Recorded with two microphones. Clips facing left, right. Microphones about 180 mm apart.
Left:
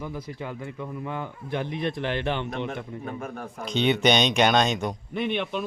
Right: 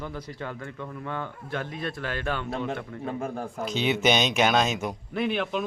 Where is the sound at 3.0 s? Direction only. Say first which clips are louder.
Right 3 dB; 30° right (ahead or behind).